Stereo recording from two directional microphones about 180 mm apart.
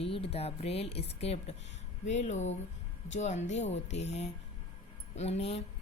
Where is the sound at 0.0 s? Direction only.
30° left (ahead or behind).